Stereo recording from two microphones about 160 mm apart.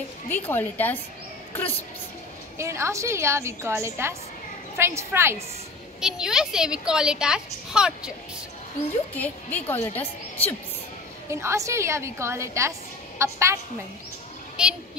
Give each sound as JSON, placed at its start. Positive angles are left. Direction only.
{"t": 0.3, "sound": "a woman's voice", "side_deg": 10}
{"t": 2.5, "sound": "a woman's voice", "side_deg": -15}
{"t": 5.9, "sound": "a woman's voice", "side_deg": -5}
{"t": 9.1, "sound": "a woman's voice", "side_deg": 10}
{"t": 11.2, "sound": "a woman's voice", "side_deg": -20}
{"t": 14.6, "sound": "a woman's voice", "side_deg": -5}